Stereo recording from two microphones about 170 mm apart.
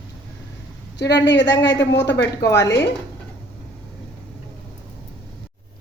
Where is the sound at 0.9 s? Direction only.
90° left.